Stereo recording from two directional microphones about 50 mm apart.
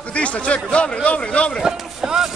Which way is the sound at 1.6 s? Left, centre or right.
Centre.